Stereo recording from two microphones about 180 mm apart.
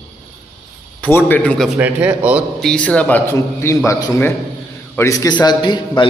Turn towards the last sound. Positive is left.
turn(degrees=25)  # may be behind; listen again after turning